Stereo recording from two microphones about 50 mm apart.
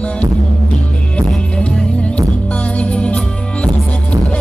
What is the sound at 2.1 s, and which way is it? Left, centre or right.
Music, left.